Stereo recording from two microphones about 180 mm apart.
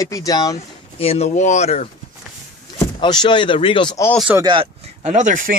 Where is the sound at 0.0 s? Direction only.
20° left (ahead or behind).